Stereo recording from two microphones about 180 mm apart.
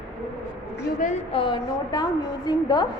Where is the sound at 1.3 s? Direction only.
25° left (ahead or behind).